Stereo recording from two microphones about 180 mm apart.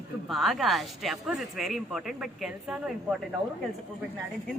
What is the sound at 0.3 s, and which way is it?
Speech, centre (ahead or behind).